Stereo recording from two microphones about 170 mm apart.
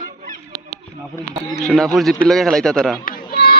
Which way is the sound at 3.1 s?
65° left (ahead or behind).